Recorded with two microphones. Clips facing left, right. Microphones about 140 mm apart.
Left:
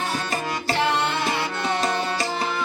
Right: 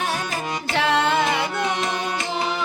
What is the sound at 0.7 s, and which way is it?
Music, 90° right.